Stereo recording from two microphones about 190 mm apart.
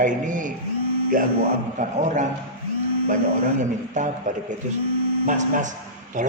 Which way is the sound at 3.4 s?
40° right (ahead or behind).